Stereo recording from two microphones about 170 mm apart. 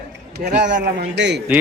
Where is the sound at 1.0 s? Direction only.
90° right.